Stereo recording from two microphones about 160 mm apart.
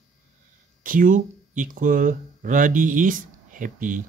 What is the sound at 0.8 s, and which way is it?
Speech, 55° right (ahead or behind).